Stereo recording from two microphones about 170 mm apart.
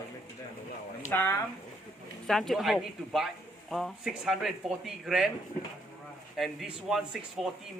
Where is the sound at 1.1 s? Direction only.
10° left (ahead or behind).